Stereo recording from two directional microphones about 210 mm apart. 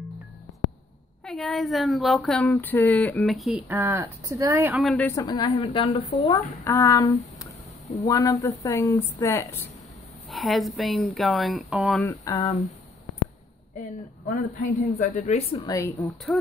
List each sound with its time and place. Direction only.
1.2 s speech: centre (ahead or behind)
3.6 s speech: 10° right (ahead or behind)
4.8 s speech: 10° left (ahead or behind)
10.3 s speech: centre (ahead or behind)
12.0 s speech: 15° left (ahead or behind)
14.6 s speech: 35° left (ahead or behind)
15.6 s speech: 15° left (ahead or behind)
16.3 s speech: 5° left (ahead or behind)